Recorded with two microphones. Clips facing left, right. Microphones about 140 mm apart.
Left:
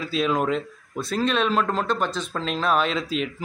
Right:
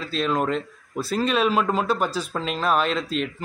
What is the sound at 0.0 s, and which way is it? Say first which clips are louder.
A man's voice: left 1 dB; 5° left (ahead or behind).